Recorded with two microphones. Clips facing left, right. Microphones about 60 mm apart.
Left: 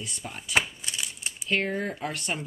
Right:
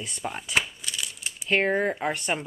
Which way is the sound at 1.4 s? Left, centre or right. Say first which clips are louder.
Right 4 dB; right.